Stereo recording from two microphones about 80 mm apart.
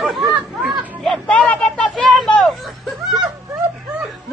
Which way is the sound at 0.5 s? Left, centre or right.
Centre.